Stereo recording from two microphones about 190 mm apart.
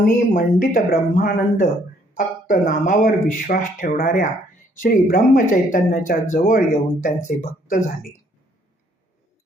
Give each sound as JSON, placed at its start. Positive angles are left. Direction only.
{"t": 0.0, "sound": "speech", "side_deg": 45}